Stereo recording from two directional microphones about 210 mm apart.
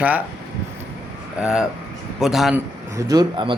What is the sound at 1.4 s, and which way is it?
A man's voice, 5° right (ahead or behind).